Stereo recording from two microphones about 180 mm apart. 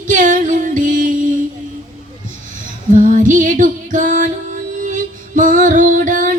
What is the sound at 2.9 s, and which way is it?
Female singing, 45° right (ahead or behind).